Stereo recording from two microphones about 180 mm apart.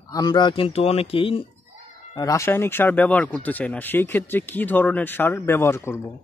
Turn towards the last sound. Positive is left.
turn(degrees=15)  # may be behind; listen again after turning